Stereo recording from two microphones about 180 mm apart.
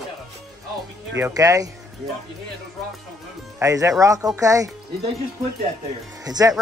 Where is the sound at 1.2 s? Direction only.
15° right (ahead or behind).